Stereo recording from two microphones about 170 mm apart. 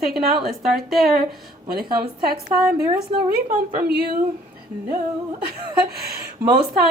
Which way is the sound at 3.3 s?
55° right (ahead or behind).